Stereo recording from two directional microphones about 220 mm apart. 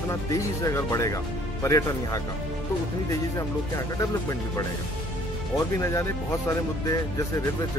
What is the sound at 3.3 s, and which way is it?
Speech, 15° left (ahead or behind).